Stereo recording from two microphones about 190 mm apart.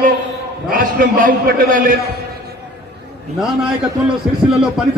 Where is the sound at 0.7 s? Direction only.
45° right (ahead or behind).